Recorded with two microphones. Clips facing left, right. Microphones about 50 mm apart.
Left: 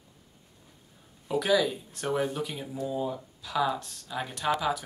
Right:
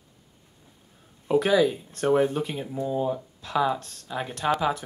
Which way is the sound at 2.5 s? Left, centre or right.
Centre.